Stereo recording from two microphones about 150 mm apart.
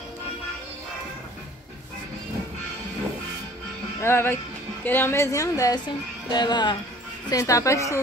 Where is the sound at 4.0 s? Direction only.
15° left (ahead or behind).